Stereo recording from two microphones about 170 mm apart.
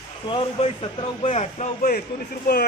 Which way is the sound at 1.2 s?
40° left (ahead or behind).